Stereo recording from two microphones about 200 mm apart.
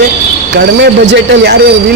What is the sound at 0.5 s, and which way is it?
Speech, 60° right (ahead or behind).